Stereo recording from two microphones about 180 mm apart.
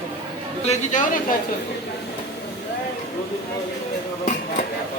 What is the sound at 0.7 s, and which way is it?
Speech, 45° left (ahead or behind).